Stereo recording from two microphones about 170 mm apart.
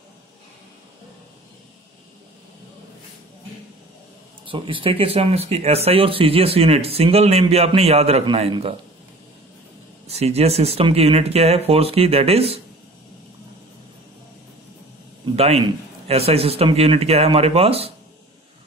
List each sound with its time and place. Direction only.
4.5 s speech: 30° right (ahead or behind)
10.0 s speech: 35° right (ahead or behind)
15.3 s speech: 35° right (ahead or behind)